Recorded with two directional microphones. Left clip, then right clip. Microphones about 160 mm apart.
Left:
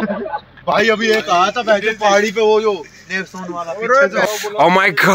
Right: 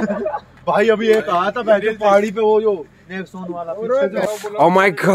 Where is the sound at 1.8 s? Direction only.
55° right (ahead or behind); by 2.7 s 80° right.